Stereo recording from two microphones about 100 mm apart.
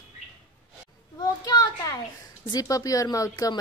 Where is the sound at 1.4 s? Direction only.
40° left (ahead or behind).